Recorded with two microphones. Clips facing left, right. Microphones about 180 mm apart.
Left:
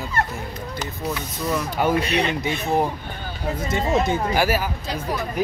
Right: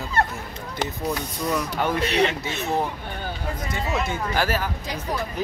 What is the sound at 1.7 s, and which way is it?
Speech, 15° left (ahead or behind).